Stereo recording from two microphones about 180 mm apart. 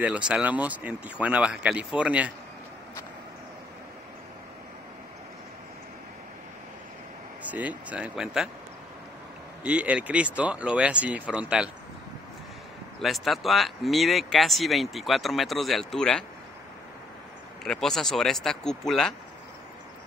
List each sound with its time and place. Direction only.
0.0 s speech: 5° right (ahead or behind)
7.4 s speech: 10° right (ahead or behind)
9.6 s speech: 5° right (ahead or behind)
13.0 s speech: centre (ahead or behind)
17.6 s speech: 5° left (ahead or behind)